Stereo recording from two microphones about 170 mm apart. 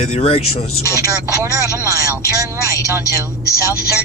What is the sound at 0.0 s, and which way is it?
Speech, 40° left (ahead or behind).